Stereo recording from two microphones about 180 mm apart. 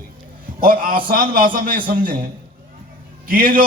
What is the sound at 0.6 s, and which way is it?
A man's voice, 50° right (ahead or behind).